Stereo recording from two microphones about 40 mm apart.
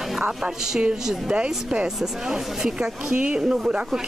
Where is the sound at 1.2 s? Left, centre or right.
Right.